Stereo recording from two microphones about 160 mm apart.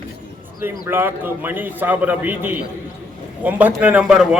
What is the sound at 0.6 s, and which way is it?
A man's voice, 15° right (ahead or behind).